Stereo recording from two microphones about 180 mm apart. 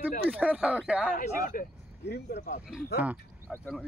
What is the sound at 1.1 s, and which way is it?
Speech, 50° left (ahead or behind).